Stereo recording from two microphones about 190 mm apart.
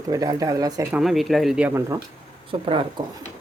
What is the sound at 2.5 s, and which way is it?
Speech, 30° right (ahead or behind).